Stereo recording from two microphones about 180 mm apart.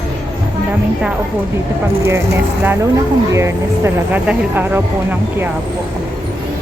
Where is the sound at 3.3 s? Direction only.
15° right (ahead or behind).